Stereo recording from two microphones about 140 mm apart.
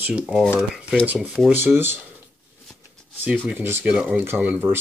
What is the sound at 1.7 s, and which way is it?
Speech, 15° right (ahead or behind).